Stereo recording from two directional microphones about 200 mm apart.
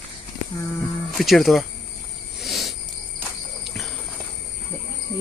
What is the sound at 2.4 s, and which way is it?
Cricket, centre (ahead or behind).